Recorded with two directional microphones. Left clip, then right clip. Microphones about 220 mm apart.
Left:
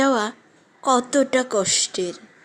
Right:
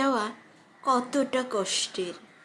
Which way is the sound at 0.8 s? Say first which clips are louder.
Left 7 dB; 35° left (ahead or behind).